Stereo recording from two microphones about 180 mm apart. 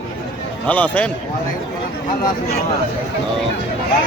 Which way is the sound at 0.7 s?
10° left (ahead or behind).